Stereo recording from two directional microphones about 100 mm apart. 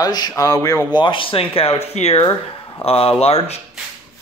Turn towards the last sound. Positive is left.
turn(degrees=90)